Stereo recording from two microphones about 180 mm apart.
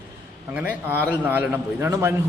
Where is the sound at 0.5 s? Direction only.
10° right (ahead or behind).